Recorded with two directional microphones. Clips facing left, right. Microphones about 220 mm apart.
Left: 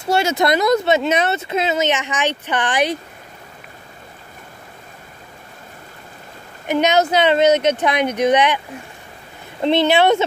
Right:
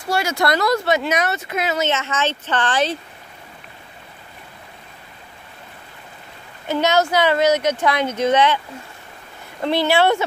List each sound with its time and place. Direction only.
0.0 s speech: 25° left (ahead or behind)
6.7 s speech: 20° left (ahead or behind)
9.6 s speech: 20° left (ahead or behind)